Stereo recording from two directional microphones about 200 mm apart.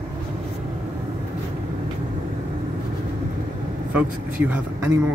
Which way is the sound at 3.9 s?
10° right (ahead or behind).